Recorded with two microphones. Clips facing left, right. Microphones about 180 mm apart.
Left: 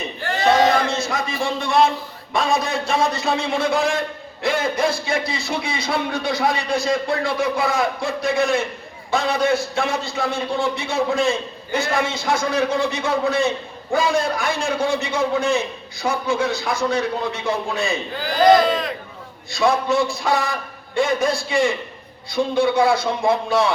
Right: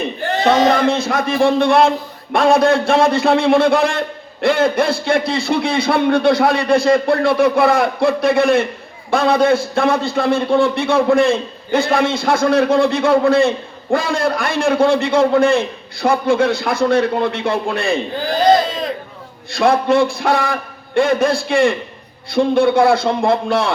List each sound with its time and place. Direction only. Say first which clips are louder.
0.4 s a man's voice: right 3 dB; 60° right (ahead or behind)
19.5 s a man's voice: right 5 dB; 55° right (ahead or behind)